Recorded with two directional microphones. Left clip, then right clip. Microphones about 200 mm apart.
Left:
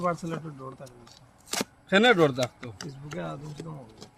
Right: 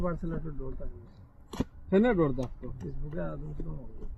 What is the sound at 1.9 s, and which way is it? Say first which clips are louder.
Speech: left 6 dB; 70° left (ahead or behind).